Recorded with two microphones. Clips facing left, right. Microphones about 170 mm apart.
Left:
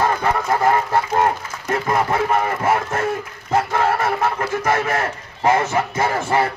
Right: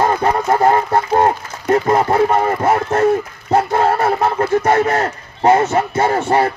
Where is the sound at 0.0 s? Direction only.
30° right (ahead or behind).